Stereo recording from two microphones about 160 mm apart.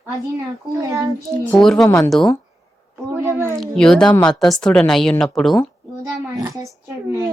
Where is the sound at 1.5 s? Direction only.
5° left (ahead or behind).